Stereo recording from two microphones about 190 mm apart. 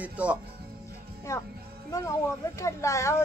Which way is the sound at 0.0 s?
5° right (ahead or behind).